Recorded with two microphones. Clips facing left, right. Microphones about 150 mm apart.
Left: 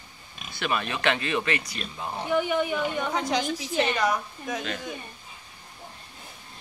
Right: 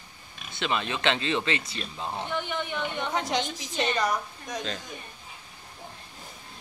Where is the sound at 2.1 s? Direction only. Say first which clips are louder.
Left 8 dB; 10° left (ahead or behind).